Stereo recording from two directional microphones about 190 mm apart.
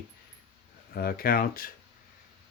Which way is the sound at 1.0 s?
50° left (ahead or behind).